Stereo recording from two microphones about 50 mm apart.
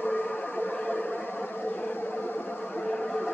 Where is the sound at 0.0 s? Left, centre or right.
Left.